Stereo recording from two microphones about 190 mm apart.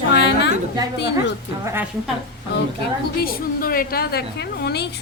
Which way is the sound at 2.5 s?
65° left (ahead or behind).